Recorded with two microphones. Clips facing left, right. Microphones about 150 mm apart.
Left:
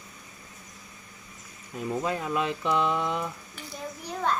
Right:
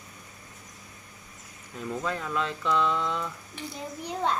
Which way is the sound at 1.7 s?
15° left (ahead or behind).